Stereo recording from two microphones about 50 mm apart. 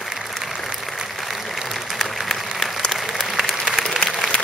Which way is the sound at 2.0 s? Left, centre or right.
Centre.